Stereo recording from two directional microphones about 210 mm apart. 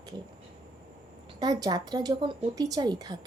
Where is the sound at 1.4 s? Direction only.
20° right (ahead or behind).